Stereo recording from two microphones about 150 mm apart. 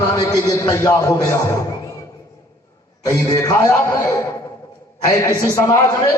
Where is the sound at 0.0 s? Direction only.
20° left (ahead or behind).